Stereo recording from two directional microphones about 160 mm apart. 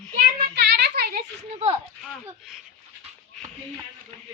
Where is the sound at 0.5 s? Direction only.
90° right.